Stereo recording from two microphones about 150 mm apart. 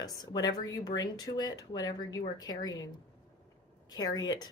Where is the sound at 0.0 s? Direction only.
25° left (ahead or behind).